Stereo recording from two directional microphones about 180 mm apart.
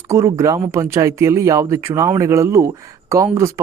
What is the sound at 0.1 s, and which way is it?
Speech, 15° right (ahead or behind).